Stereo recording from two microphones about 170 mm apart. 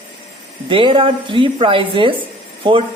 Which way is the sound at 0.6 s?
30° right (ahead or behind).